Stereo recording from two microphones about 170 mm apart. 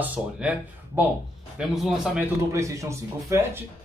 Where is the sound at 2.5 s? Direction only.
20° right (ahead or behind).